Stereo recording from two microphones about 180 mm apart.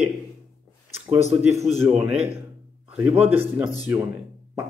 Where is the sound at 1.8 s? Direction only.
10° right (ahead or behind).